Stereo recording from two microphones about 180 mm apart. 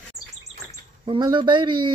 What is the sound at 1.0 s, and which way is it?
Speech, 25° right (ahead or behind).